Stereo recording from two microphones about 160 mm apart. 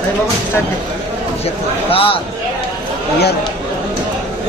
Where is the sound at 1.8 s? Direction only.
35° left (ahead or behind).